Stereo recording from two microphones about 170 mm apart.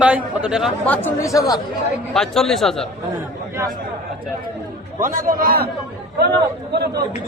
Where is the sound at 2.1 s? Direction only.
Centre (ahead or behind).